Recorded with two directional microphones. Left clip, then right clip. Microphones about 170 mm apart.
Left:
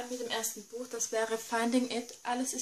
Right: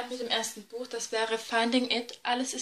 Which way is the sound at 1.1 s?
35° left (ahead or behind).